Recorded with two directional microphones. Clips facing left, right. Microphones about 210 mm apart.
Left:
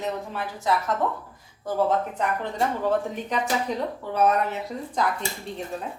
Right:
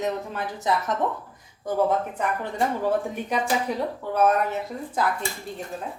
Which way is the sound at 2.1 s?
10° right (ahead or behind).